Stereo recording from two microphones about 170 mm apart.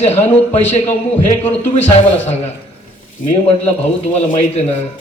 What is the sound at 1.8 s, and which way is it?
Speech, 40° left (ahead or behind).